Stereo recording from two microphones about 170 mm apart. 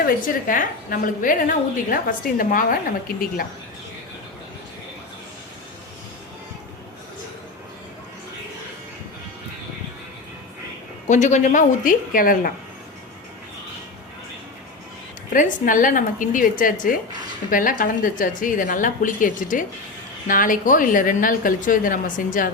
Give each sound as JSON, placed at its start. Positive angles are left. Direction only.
{"t": 0.0, "sound": "a woman's voice", "side_deg": 50}
{"t": 11.1, "sound": "a woman's voice", "side_deg": 45}
{"t": 15.3, "sound": "a woman's voice", "side_deg": 50}